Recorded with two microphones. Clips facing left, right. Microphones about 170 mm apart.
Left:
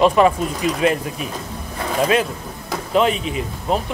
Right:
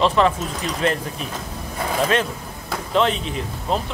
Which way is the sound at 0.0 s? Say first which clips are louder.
Left 4 dB; 10° left (ahead or behind).